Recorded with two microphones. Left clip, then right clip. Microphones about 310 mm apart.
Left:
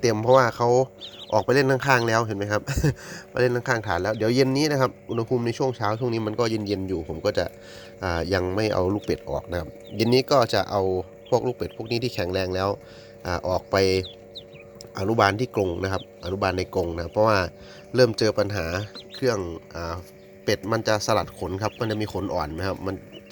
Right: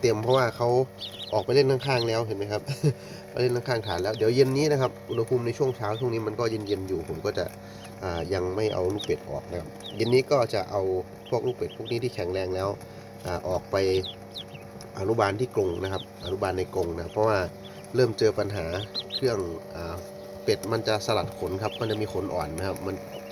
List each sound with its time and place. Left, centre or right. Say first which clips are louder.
0.0 s speech: left 5 dB; centre